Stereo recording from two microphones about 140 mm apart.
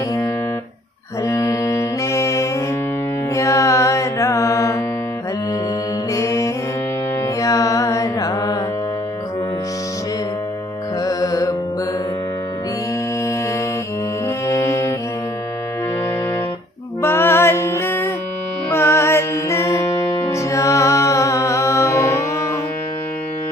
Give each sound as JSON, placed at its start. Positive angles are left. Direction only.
{"t": 1.2, "sound": "music", "side_deg": 20}
{"t": 3.3, "sound": "mantra", "side_deg": 20}
{"t": 6.1, "sound": "music", "side_deg": 20}
{"t": 11.1, "sound": "music", "side_deg": 25}
{"t": 14.5, "sound": "music", "side_deg": 20}
{"t": 17.0, "sound": "music", "side_deg": 15}